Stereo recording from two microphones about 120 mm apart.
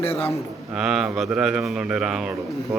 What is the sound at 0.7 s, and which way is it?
A man's voice, 5° right (ahead or behind).